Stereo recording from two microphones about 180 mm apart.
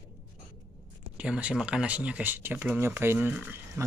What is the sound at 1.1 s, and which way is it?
Speech, 5° right (ahead or behind).